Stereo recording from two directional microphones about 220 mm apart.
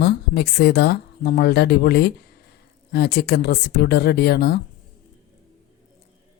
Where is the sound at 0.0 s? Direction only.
50° left (ahead or behind).